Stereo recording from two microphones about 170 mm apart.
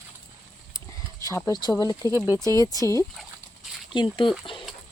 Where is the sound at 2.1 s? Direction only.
10° right (ahead or behind).